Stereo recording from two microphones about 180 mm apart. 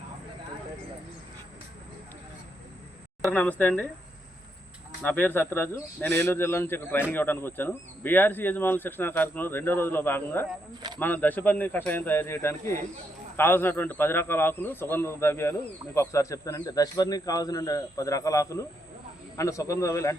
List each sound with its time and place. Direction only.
3.2 s speech: 10° left (ahead or behind)
5.0 s speech: 10° left (ahead or behind)